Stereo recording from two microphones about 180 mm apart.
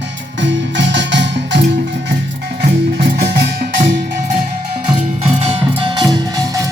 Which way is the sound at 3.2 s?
60° right (ahead or behind).